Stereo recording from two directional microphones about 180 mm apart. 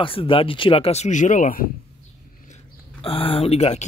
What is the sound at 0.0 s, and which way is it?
Speech, 30° left (ahead or behind).